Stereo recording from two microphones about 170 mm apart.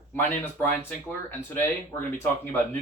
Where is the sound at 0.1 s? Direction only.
10° left (ahead or behind).